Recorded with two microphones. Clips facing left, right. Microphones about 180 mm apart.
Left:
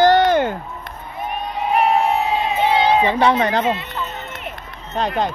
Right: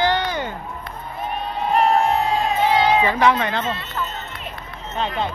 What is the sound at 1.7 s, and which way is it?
Crowd, 5° left (ahead or behind).